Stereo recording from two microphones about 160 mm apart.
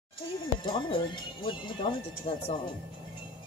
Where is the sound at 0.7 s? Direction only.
30° left (ahead or behind).